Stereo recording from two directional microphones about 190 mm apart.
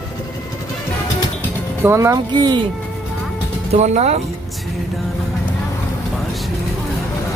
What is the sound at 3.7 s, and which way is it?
Speech, 35° right (ahead or behind).